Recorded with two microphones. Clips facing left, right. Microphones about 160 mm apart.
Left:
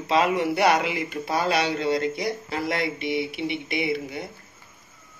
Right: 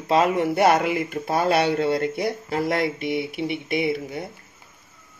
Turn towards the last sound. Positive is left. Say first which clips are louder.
# right 3 dB
turn(degrees=-45)  # may be behind; listen again after turning